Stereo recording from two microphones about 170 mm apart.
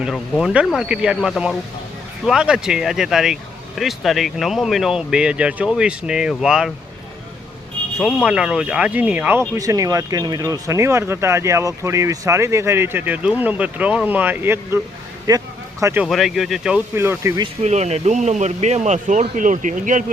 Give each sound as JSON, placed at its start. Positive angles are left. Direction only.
{"t": 0.0, "sound": "speech", "side_deg": -5}
{"t": 7.9, "sound": "a man's voice", "side_deg": -5}
{"t": 16.0, "sound": "speech", "side_deg": 0}
{"t": 17.6, "sound": "speech", "side_deg": -40}